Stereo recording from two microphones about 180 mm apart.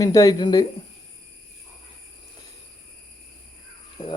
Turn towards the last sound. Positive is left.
turn(degrees=25)  # may be behind; listen again after turning